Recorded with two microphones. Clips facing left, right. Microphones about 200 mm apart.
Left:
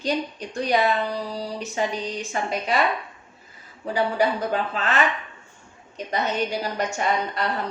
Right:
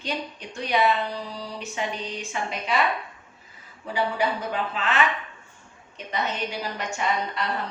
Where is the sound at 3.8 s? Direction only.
40° left (ahead or behind).